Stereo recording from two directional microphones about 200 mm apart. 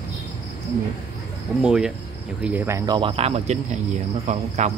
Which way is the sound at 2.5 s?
15° right (ahead or behind).